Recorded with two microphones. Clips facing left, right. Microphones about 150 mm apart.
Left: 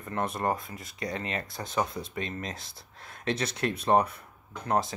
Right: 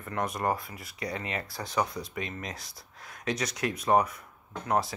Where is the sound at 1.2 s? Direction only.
20° right (ahead or behind).